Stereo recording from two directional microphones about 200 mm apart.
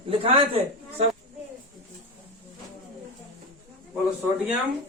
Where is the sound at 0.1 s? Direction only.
30° right (ahead or behind).